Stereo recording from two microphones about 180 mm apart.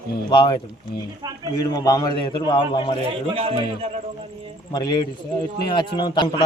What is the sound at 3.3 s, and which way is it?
Speech, 30° right (ahead or behind).